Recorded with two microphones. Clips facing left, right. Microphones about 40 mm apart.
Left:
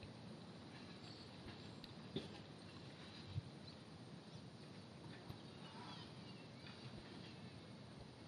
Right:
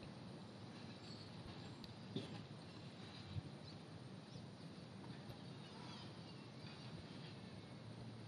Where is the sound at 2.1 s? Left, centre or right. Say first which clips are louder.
Even; centre.